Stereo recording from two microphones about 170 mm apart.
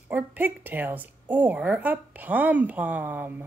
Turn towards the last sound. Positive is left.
turn(degrees=-10)  # may be behind; listen again after turning